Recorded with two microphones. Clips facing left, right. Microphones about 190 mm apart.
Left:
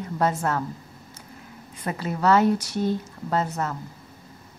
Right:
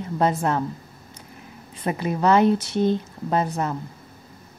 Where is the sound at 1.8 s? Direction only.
20° right (ahead or behind).